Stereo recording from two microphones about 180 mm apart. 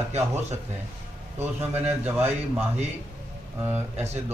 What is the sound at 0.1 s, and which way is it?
Speech, 35° right (ahead or behind).